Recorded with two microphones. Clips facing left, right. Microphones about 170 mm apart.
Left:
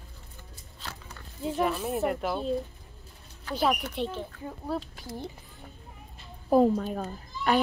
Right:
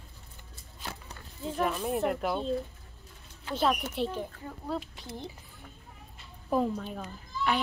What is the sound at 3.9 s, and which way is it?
Speech, 10° right (ahead or behind).